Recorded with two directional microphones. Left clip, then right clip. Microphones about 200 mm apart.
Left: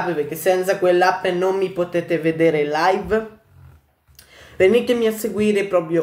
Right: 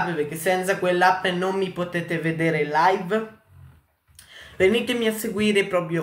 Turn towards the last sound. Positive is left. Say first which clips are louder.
# left 3 dB
turn(degrees=5)  # may be behind; listen again after turning